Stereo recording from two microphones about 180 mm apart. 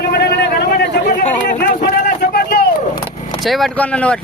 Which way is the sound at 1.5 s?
70° left (ahead or behind).